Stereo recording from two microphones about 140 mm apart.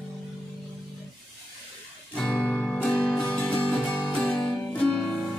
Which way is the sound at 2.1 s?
10° left (ahead or behind).